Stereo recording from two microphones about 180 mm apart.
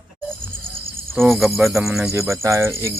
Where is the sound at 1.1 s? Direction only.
Centre (ahead or behind).